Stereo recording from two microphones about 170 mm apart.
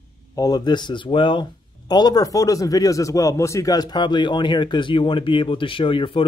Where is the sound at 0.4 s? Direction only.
25° left (ahead or behind).